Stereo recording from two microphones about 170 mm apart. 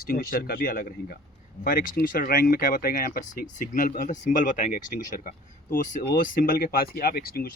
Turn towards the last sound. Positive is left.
turn(degrees=60)  # may be behind; listen again after turning